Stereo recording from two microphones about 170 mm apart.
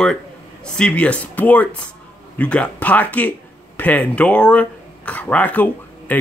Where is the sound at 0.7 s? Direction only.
5° left (ahead or behind).